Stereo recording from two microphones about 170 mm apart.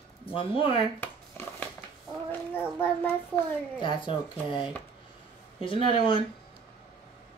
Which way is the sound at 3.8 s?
25° left (ahead or behind).